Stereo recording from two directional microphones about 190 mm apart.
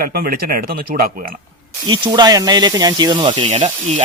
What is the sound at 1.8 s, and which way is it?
Speech, 25° right (ahead or behind).